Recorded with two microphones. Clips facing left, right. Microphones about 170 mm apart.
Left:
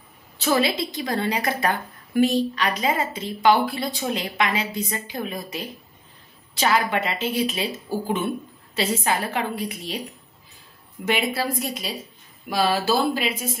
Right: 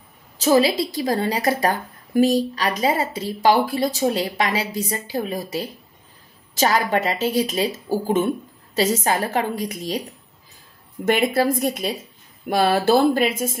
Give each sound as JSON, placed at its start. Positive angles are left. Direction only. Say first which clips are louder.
{"t": 0.4, "sound": "a woman's voice", "louder": "right 5 dB", "side_deg": -35}
{"t": 11.1, "sound": "speech", "louder": "right 6 dB", "side_deg": -50}